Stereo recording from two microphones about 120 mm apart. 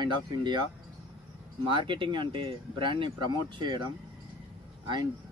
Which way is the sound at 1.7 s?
45° right (ahead or behind).